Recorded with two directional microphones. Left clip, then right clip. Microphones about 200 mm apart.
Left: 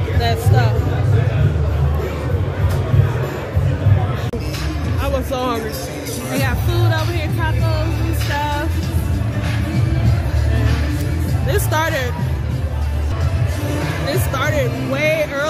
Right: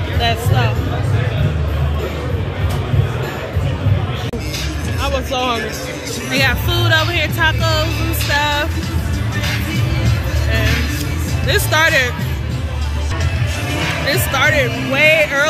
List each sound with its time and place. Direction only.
0.2 s a sound: 10° left (ahead or behind)
5.0 s music: 25° left (ahead or behind)
6.3 s music: 5° left (ahead or behind)
11.4 s speech: 10° left (ahead or behind)
14.0 s speech: 5° left (ahead or behind)